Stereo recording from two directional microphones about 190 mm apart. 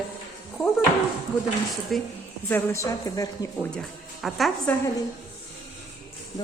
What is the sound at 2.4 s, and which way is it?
A woman's voice, 15° left (ahead or behind).